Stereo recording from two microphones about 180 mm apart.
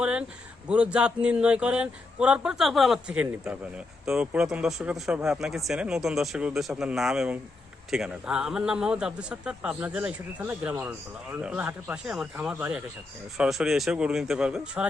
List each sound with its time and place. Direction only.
0.0 s a man's voice: 5° right (ahead or behind)